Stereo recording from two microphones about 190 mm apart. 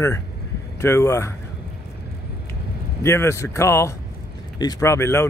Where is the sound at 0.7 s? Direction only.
15° left (ahead or behind).